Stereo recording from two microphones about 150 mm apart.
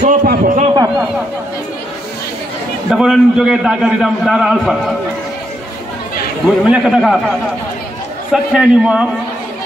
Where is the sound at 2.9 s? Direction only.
Centre (ahead or behind).